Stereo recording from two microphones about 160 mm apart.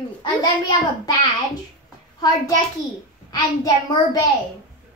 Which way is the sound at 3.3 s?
25° left (ahead or behind).